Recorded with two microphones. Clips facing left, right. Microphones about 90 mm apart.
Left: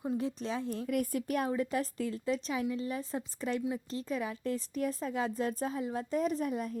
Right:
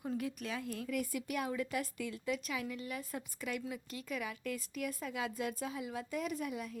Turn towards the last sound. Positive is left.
turn(degrees=40)  # may be behind; listen again after turning